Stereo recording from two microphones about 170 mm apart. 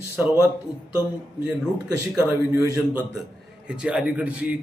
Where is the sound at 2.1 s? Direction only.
10° right (ahead or behind).